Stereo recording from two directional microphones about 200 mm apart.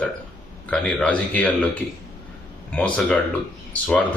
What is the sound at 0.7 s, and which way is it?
Speech, 5° left (ahead or behind).